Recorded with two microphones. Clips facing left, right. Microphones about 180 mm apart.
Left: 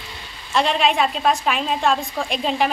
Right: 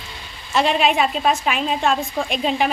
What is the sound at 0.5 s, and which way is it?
A woman's voice, 5° right (ahead or behind).